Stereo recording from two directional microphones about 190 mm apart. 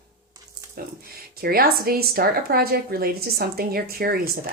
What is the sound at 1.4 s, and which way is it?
Speech, 50° right (ahead or behind).